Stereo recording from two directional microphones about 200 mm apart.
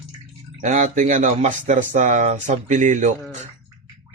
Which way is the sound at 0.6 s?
40° right (ahead or behind).